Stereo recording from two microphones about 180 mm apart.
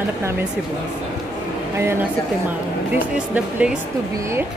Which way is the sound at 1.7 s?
15° right (ahead or behind).